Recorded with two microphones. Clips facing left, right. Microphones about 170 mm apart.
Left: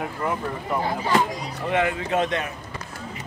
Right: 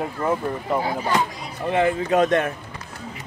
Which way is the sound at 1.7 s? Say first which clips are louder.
Right 4 dB; 30° right (ahead or behind).